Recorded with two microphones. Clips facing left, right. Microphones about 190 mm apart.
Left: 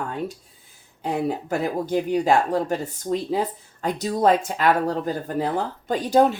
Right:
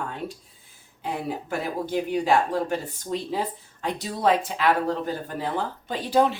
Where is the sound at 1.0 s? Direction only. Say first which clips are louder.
Left 5 dB; 40° left (ahead or behind).